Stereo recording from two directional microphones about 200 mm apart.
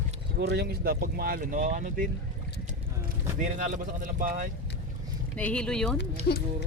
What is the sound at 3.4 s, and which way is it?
Speech, 40° right (ahead or behind).